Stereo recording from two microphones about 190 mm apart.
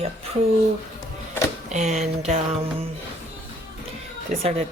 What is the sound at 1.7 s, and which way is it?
Speech, 40° right (ahead or behind).